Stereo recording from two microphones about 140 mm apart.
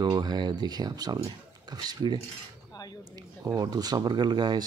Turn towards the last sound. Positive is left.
turn(degrees=-30)  # may be behind; listen again after turning